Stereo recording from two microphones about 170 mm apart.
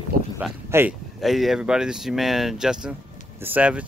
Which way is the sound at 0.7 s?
15° right (ahead or behind).